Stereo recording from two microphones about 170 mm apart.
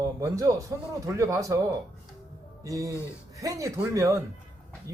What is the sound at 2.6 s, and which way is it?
Speech, 20° right (ahead or behind).